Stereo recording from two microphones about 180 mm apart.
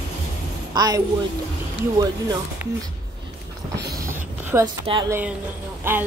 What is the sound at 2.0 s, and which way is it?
Speech, 20° right (ahead or behind).